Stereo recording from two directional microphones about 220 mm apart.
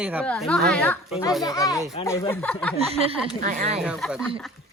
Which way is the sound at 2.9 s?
25° right (ahead or behind).